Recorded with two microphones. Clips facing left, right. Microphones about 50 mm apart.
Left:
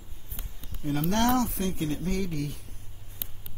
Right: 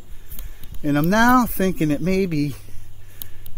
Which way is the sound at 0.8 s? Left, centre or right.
Right.